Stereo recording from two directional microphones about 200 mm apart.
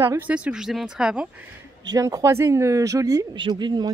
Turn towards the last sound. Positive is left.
turn(degrees=-20)  # may be behind; listen again after turning